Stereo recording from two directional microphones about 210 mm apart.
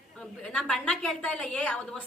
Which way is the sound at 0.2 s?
Centre (ahead or behind).